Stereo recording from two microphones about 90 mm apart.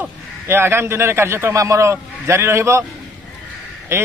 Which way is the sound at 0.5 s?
25° right (ahead or behind).